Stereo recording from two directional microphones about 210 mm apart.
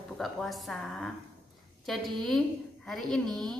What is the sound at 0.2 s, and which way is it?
Speech, centre (ahead or behind).